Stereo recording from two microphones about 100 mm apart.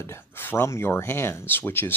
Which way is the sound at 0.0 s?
25° left (ahead or behind).